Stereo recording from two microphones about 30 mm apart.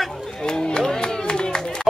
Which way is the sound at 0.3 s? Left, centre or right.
Left.